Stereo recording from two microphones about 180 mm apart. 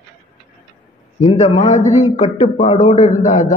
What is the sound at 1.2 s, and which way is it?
A man's voice, 40° left (ahead or behind).